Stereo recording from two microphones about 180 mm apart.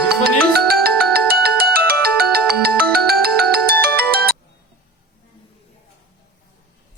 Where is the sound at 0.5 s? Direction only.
60° right (ahead or behind).